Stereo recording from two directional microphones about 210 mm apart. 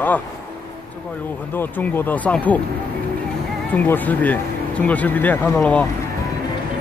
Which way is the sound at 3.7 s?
10° left (ahead or behind).